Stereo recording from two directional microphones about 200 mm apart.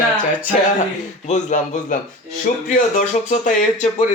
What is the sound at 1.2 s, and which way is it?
Speech, 35° left (ahead or behind).